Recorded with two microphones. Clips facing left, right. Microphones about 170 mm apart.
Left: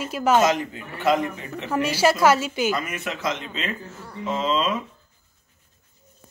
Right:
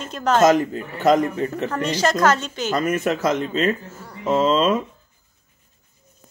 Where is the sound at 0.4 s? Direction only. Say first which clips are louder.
Right 5 dB; 45° right (ahead or behind).